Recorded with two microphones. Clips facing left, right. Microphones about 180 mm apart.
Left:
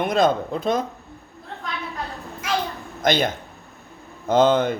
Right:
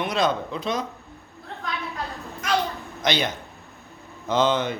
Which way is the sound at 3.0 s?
50° left (ahead or behind).